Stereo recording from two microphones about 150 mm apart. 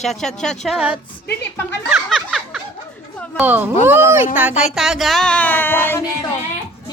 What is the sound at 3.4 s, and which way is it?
Speech, 10° right (ahead or behind).